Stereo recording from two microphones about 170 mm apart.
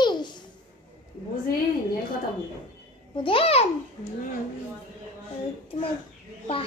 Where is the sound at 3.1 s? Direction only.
30° left (ahead or behind).